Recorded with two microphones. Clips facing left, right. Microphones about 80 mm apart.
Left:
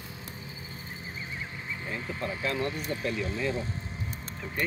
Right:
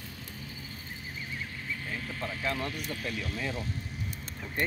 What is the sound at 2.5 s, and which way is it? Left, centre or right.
Speech, left.